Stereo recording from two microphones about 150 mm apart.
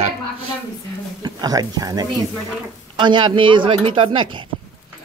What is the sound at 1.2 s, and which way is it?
Speech, 25° right (ahead or behind).